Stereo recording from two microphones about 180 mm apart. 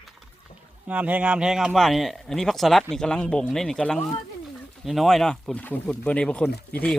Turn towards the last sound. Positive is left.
turn(degrees=5)  # may be behind; listen again after turning